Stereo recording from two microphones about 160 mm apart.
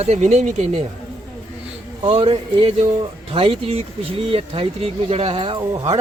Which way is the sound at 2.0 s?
35° right (ahead or behind).